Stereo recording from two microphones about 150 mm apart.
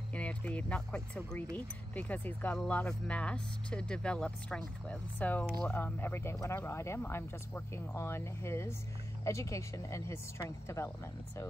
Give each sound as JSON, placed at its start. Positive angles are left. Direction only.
{"t": 0.1, "sound": "speech", "side_deg": 10}